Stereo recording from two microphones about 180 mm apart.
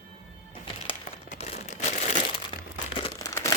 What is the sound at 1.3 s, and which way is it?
Crumpling, 35° left (ahead or behind).